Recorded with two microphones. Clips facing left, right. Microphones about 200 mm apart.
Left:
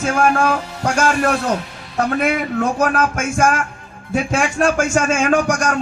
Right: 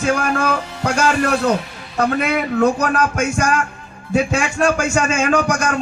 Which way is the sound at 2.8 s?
50° left (ahead or behind).